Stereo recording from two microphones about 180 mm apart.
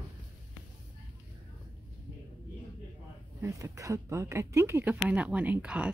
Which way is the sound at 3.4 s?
15° right (ahead or behind).